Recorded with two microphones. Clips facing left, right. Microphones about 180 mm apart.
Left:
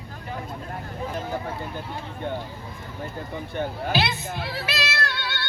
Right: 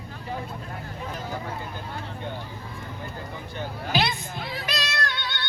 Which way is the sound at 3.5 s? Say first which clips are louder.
Left 6 dB; 55° left (ahead or behind).